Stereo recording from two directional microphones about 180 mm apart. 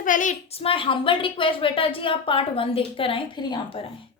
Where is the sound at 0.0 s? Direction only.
45° left (ahead or behind).